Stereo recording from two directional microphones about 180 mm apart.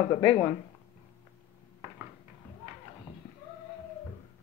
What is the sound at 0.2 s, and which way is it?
Speech, 30° left (ahead or behind).